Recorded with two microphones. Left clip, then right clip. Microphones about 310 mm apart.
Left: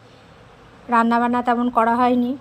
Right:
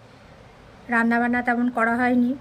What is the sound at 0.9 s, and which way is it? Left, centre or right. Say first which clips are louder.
A woman's voice: left 4 dB; left.